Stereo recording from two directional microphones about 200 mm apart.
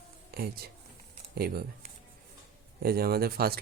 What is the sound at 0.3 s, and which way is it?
Speech, 50° right (ahead or behind).